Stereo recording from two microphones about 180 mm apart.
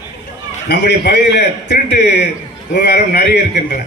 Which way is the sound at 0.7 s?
70° left (ahead or behind).